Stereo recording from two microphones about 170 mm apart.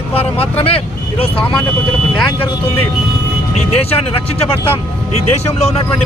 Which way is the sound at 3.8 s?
35° left (ahead or behind).